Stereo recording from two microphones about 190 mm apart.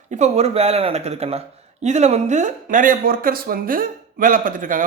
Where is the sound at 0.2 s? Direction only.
35° right (ahead or behind).